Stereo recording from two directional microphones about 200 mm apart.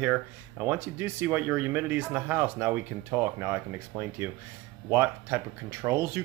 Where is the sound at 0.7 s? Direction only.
10° right (ahead or behind).